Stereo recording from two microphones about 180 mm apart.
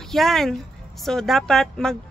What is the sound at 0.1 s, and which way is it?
Speech, centre (ahead or behind).